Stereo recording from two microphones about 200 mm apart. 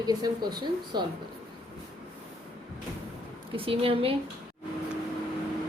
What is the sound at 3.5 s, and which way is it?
Speech, 25° right (ahead or behind).